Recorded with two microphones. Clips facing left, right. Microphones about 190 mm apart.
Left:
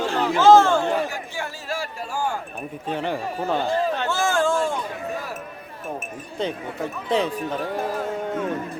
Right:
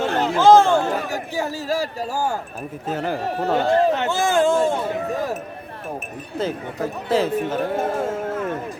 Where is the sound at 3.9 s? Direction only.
20° right (ahead or behind).